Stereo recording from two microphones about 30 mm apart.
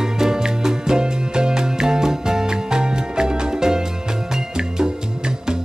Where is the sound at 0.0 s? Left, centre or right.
Right.